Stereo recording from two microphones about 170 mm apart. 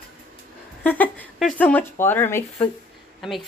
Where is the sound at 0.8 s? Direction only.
10° left (ahead or behind).